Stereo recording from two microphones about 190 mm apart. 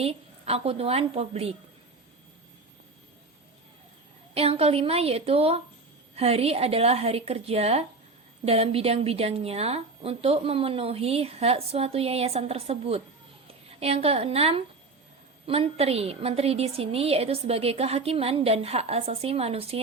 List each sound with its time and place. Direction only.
0.0 s a woman's voice: 30° right (ahead or behind)
4.4 s a woman's voice: 30° right (ahead or behind)